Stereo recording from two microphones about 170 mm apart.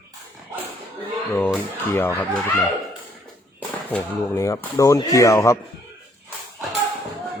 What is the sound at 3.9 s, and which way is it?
Speech, 10° left (ahead or behind).